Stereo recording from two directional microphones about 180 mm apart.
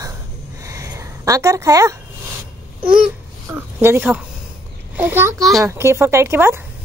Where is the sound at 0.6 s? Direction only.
15° right (ahead or behind).